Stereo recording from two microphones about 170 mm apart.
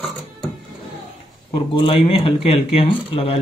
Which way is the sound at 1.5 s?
30° left (ahead or behind).